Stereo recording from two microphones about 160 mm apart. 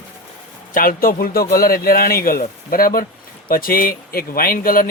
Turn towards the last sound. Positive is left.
turn(degrees=60)  # may be behind; listen again after turning